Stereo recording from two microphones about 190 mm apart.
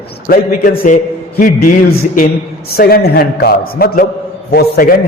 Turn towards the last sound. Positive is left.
turn(degrees=50)  # may be behind; listen again after turning